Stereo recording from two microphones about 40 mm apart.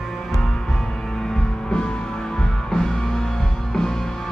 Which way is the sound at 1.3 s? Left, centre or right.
Centre.